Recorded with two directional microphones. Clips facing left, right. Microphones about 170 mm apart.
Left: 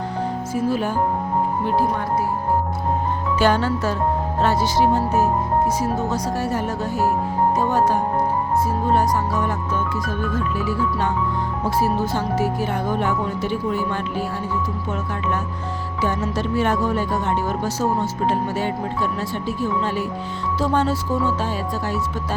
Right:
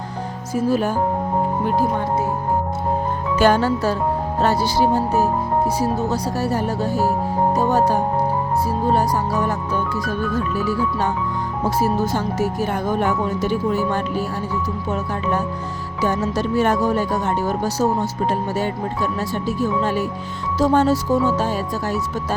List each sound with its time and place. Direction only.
0.5 s speech: 40° right (ahead or behind)
3.3 s speech: 45° right (ahead or behind)
16.0 s speech: 40° right (ahead or behind)